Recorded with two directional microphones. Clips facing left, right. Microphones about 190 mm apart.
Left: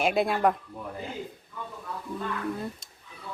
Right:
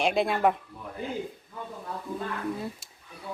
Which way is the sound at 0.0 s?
Centre (ahead or behind).